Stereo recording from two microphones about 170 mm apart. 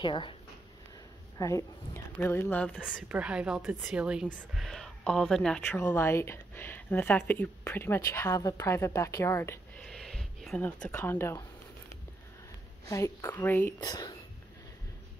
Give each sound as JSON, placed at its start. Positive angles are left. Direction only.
{"t": 0.0, "sound": "speech", "side_deg": 30}
{"t": 1.4, "sound": "speech", "side_deg": 20}
{"t": 2.7, "sound": "a woman's voice", "side_deg": -5}
{"t": 9.8, "sound": "speech", "side_deg": 5}
{"t": 12.8, "sound": "speech", "side_deg": 20}
{"t": 13.7, "sound": "speech", "side_deg": 25}